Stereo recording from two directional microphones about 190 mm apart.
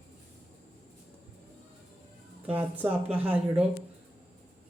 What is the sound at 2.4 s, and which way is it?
A man's voice, 10° right (ahead or behind).